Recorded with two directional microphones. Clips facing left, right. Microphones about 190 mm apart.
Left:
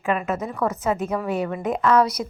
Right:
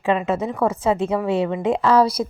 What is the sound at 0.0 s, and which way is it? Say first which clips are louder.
A woman's voice: right 4 dB; 30° right (ahead or behind).